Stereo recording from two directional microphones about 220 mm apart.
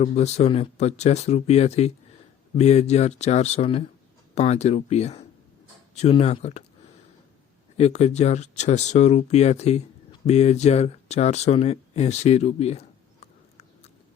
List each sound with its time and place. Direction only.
0.0 s speech: 30° left (ahead or behind)
7.8 s speech: 30° left (ahead or behind)